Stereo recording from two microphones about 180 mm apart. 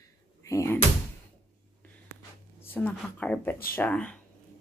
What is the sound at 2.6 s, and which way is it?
A woman's voice, 10° left (ahead or behind).